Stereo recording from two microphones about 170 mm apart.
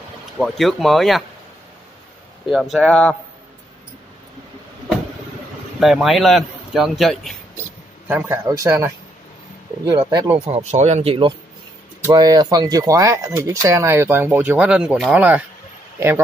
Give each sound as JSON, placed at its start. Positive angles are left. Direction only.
{"t": 0.4, "sound": "a man's voice", "side_deg": 0}
{"t": 2.4, "sound": "a man's voice", "side_deg": 0}
{"t": 5.8, "sound": "a man's voice", "side_deg": 0}
{"t": 8.1, "sound": "speech", "side_deg": -10}
{"t": 10.3, "sound": "speech", "side_deg": -35}